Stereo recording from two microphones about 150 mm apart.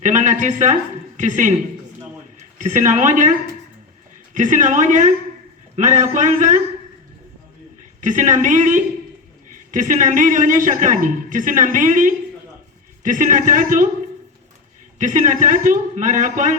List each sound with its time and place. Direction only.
0.0 s speech: 55° right (ahead or behind)
2.6 s speech: 55° right (ahead or behind)
4.4 s speech: 60° right (ahead or behind)
8.0 s speech: 55° right (ahead or behind)
14.9 s speech: 55° right (ahead or behind)